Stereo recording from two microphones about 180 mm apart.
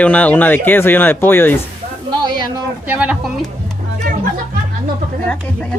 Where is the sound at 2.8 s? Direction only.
10° right (ahead or behind).